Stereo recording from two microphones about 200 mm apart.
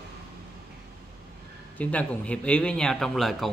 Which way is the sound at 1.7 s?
5° left (ahead or behind).